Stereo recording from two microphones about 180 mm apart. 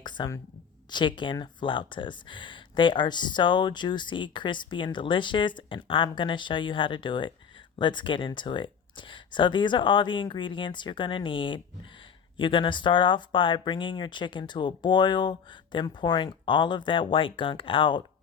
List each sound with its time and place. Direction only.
0.0 s speech: 25° left (ahead or behind)